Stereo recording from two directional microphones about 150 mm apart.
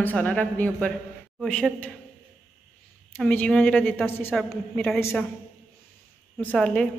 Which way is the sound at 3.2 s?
10° left (ahead or behind).